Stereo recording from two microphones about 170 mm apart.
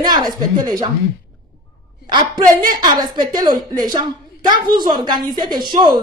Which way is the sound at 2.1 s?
25° right (ahead or behind).